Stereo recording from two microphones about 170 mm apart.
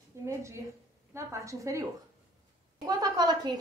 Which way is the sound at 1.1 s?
20° right (ahead or behind).